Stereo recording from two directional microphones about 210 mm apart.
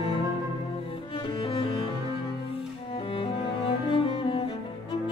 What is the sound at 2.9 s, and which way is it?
Cello, 25° left (ahead or behind).